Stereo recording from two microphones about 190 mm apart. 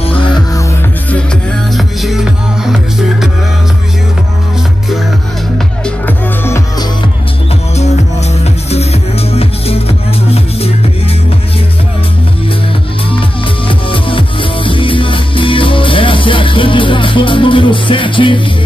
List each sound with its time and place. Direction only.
0.0 s music: 25° left (ahead or behind)
1.8 s music: centre (ahead or behind)
5.9 s music: 10° left (ahead or behind)
7.7 s music: 35° left (ahead or behind)
13.7 s music: 25° left (ahead or behind)